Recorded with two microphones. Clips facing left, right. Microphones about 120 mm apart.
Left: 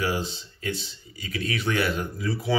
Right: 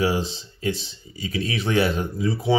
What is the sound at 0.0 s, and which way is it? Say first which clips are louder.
Speech: right 5 dB; 30° right (ahead or behind).